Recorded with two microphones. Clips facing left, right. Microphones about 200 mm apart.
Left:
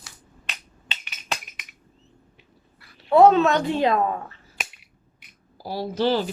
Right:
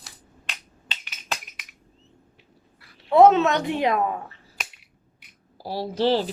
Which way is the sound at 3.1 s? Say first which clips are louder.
Even; 20° right (ahead or behind).